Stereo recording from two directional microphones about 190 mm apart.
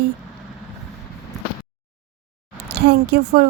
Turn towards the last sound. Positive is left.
turn(degrees=-55)  # may be behind; listen again after turning